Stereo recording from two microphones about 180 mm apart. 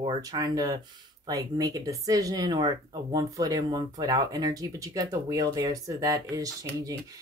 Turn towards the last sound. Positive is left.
turn(degrees=-20)  # may be behind; listen again after turning